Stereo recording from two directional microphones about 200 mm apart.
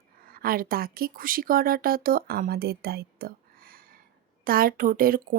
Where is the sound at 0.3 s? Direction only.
45° right (ahead or behind).